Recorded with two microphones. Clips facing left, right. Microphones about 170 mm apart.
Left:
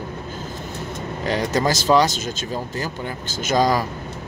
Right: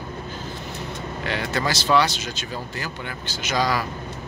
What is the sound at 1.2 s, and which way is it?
Speech, 40° left (ahead or behind).